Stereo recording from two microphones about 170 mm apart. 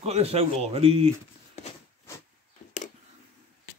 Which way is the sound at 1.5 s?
40° left (ahead or behind).